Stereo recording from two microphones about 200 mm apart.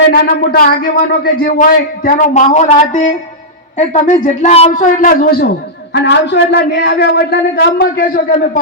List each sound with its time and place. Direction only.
0.1 s a man's voice: 45° left (ahead or behind)
5.9 s a man's voice: 60° left (ahead or behind); by 8.4 s 45° left (ahead or behind)